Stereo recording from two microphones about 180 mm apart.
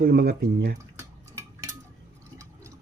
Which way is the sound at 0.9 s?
15° right (ahead or behind).